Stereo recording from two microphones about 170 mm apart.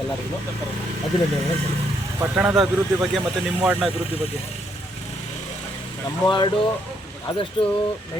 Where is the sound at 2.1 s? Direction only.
10° right (ahead or behind).